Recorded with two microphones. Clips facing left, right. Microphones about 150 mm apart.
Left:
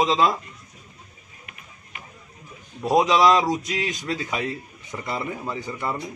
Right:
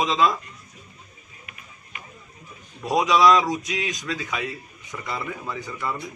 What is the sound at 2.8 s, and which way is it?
Speech, 25° left (ahead or behind).